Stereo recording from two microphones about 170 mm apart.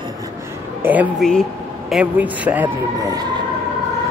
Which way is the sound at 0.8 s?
10° right (ahead or behind).